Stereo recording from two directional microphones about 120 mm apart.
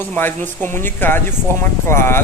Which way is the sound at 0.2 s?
15° left (ahead or behind).